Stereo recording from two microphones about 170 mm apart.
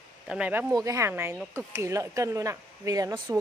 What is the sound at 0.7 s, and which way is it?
Speech, 20° right (ahead or behind).